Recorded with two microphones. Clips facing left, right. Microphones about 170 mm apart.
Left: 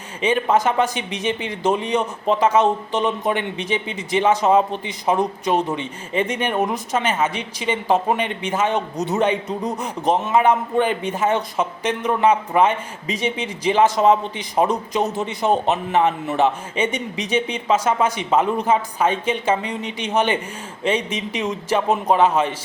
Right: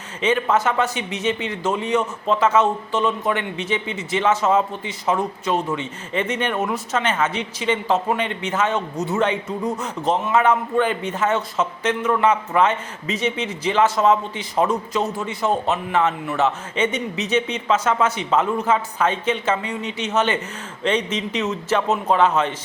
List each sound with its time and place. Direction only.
0.2 s speech: 15° left (ahead or behind)